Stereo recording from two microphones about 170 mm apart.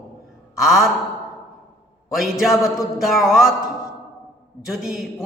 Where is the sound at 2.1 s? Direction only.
Centre (ahead or behind).